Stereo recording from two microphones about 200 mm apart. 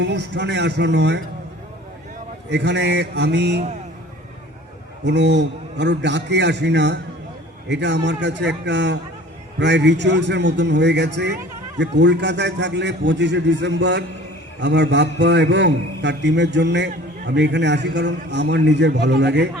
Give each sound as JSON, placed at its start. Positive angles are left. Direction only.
{"t": 0.0, "sound": "a man's voice", "side_deg": -60}
{"t": 2.5, "sound": "a man's voice", "side_deg": -60}
{"t": 5.0, "sound": "a man's voice", "side_deg": -60}